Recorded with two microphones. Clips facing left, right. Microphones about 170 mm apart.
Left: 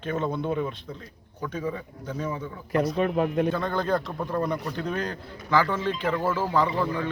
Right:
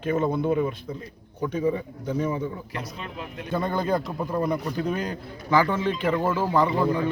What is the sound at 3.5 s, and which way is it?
A man's voice, 10° right (ahead or behind).